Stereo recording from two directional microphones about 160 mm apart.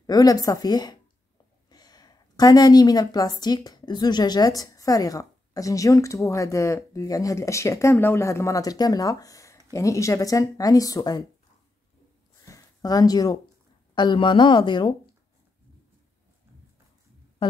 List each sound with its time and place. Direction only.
0.0 s a woman's voice: 25° left (ahead or behind)
12.4 s a sound: 20° left (ahead or behind)
13.9 s a woman's voice: 30° left (ahead or behind)